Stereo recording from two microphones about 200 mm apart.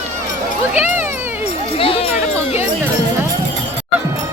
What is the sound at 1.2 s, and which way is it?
Music, 10° right (ahead or behind).